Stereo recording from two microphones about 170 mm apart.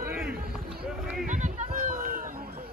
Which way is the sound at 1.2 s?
50° right (ahead or behind).